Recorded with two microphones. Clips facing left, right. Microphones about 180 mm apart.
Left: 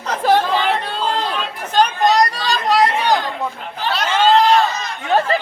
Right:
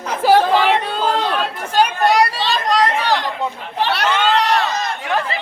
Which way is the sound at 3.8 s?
65° right (ahead or behind).